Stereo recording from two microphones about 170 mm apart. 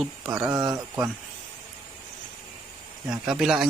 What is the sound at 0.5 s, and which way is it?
Speech, 20° right (ahead or behind).